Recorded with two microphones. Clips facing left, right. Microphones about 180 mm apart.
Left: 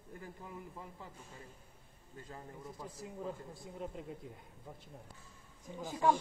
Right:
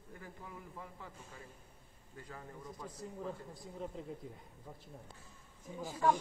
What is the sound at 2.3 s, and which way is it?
Speech, 25° left (ahead or behind).